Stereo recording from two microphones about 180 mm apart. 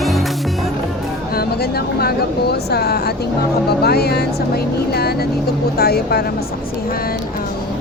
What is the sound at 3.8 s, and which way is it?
Music, 60° left (ahead or behind).